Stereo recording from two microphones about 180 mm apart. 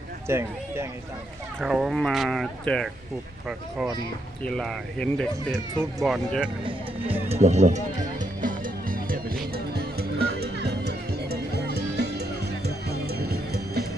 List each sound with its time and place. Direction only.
0.3 s speech: 15° right (ahead or behind)
1.5 s speech: 5° right (ahead or behind)
4.4 s speech: 5° left (ahead or behind)
6.7 s speech: 35° right (ahead or behind)
8.2 s music: 50° right (ahead or behind)